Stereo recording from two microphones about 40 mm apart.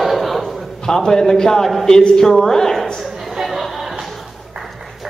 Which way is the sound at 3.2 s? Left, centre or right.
Centre.